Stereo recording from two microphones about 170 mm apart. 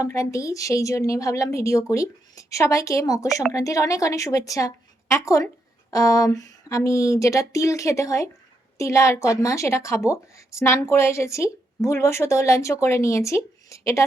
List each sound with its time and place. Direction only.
0.0 s a woman's voice: 20° left (ahead or behind)